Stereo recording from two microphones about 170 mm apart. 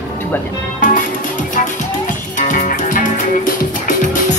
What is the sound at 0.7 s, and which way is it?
Music, 50° left (ahead or behind).